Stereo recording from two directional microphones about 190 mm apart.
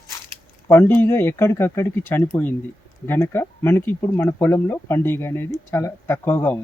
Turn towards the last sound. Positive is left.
turn(degrees=10)  # may be behind; listen again after turning